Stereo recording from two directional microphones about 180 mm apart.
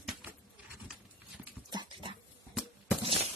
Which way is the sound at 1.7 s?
25° right (ahead or behind).